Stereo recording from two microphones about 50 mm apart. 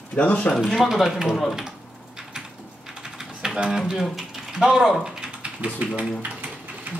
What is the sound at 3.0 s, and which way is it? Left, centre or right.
Typing, centre.